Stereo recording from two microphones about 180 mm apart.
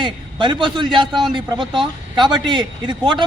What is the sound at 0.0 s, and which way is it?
A man's voice, 25° right (ahead or behind).